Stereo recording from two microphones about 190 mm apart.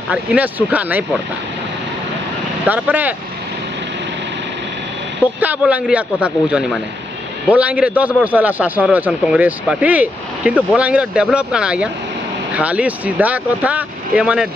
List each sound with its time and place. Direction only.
0.1 s speech: 5° right (ahead or behind)
2.7 s speech: 10° right (ahead or behind)
5.4 s speech: 10° right (ahead or behind)